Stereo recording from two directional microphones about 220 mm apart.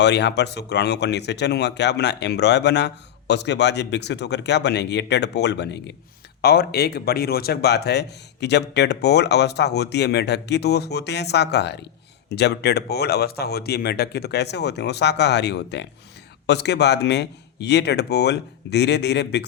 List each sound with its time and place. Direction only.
0.0 s speech: 50° left (ahead or behind)